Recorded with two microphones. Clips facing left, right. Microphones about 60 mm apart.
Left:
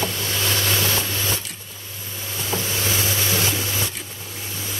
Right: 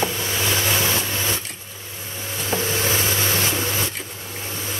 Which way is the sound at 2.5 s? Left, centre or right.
Right.